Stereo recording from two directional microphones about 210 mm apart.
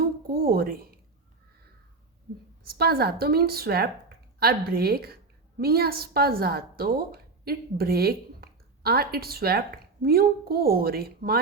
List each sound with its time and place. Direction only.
0.0 s speech: 45° right (ahead or behind)
2.7 s speech: 50° right (ahead or behind)